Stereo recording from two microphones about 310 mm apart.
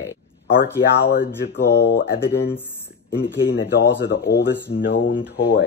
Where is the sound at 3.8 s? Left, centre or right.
Left.